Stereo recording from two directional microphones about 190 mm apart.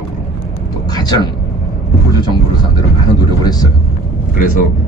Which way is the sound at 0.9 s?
20° left (ahead or behind).